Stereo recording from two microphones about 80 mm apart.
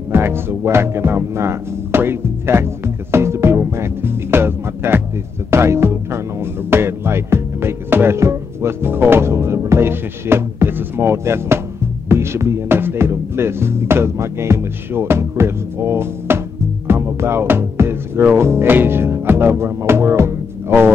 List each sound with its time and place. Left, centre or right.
0.1 s music: right
12.1 s speech: right